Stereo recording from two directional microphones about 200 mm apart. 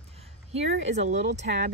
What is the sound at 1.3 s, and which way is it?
Speech, 60° right (ahead or behind).